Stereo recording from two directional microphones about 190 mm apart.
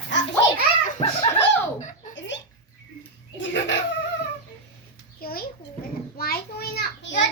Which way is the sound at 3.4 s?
70° left (ahead or behind).